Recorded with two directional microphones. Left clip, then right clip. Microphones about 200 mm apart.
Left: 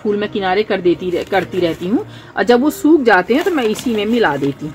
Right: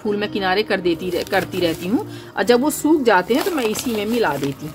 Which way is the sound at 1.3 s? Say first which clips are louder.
Left 3 dB; 30° left (ahead or behind).